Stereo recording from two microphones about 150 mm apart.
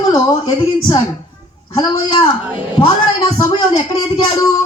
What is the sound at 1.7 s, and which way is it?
Speech, 35° left (ahead or behind).